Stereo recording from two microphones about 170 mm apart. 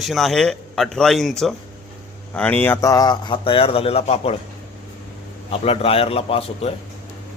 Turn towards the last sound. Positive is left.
turn(degrees=35)  # may be behind; listen again after turning